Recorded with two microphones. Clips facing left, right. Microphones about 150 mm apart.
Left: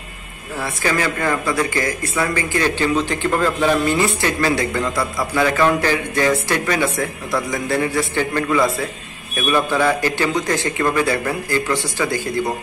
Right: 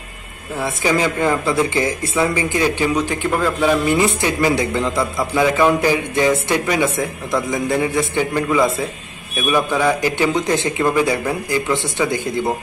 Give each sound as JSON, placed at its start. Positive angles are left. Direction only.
{"t": 0.8, "sound": "speech", "side_deg": -15}